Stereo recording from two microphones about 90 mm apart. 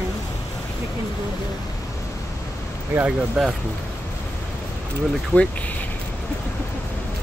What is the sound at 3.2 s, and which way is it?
Speech, 5° right (ahead or behind).